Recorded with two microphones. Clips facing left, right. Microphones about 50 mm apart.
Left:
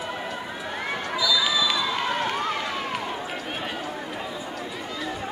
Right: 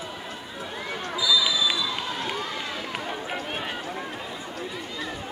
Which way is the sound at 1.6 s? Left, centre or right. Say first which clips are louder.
Left 2 dB; left.